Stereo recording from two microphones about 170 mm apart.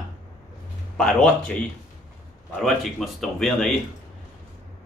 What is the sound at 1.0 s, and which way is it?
Speech, 5° left (ahead or behind).